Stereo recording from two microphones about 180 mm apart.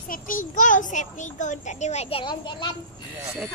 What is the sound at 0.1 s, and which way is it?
A child's voice, 50° left (ahead or behind).